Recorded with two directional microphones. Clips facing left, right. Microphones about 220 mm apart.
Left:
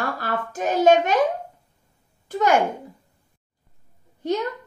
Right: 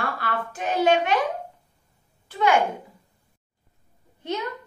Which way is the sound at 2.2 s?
45° left (ahead or behind).